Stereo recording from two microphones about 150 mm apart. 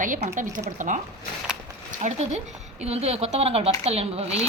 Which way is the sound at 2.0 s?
50° right (ahead or behind).